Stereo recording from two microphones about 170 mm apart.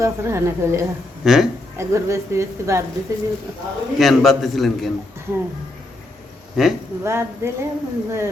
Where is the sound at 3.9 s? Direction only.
Centre (ahead or behind).